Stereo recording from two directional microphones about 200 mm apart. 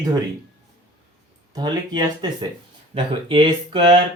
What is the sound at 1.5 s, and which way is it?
Speech, 20° right (ahead or behind).